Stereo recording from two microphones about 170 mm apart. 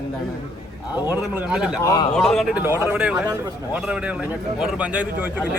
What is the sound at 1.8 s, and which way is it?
Speech, 20° left (ahead or behind).